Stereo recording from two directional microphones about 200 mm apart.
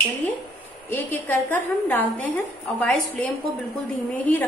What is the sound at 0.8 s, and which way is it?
A woman's voice, 10° left (ahead or behind).